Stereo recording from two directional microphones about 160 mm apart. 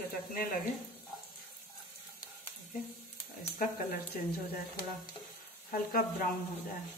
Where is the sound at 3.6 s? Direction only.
65° left (ahead or behind).